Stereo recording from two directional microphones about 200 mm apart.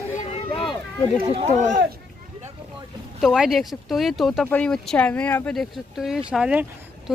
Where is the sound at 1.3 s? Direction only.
35° right (ahead or behind).